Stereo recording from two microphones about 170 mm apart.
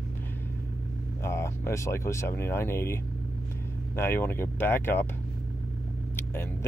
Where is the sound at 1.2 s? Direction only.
15° left (ahead or behind).